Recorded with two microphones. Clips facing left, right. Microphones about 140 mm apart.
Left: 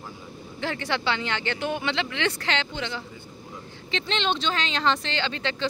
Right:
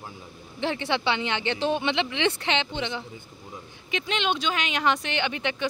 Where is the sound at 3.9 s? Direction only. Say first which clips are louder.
Even; 10° right (ahead or behind).